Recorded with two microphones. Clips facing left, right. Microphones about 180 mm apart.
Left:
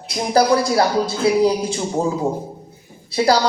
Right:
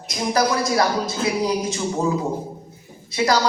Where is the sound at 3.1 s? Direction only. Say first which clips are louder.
Left 3 dB; 30° left (ahead or behind).